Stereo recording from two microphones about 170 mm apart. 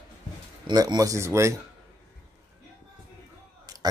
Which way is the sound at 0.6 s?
20° right (ahead or behind).